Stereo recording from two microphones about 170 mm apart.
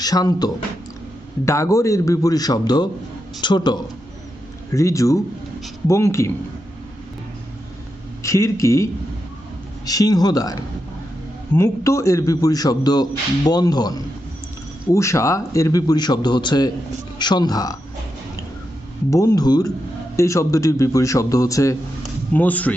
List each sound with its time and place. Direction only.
0.0 s a man's voice: 20° left (ahead or behind)
8.2 s a man's voice: 20° left (ahead or behind)
14.9 s a man's voice: 15° left (ahead or behind)
19.1 s a man's voice: 20° left (ahead or behind)